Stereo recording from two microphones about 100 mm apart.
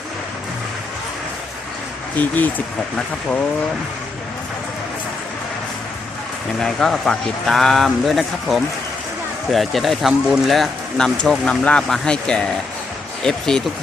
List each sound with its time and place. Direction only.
2.1 s speech: 15° left (ahead or behind)
6.6 s speech: 5° left (ahead or behind)